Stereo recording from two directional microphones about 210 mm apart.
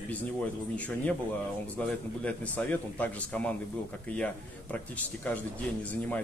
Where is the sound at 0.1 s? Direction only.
5° left (ahead or behind).